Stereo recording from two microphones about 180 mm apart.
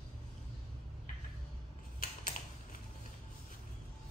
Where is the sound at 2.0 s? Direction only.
45° left (ahead or behind).